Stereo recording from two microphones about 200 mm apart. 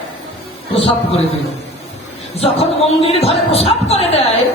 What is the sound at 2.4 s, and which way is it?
A man's voice, 30° left (ahead or behind).